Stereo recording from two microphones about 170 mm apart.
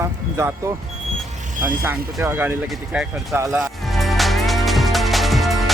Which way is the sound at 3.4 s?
20° right (ahead or behind).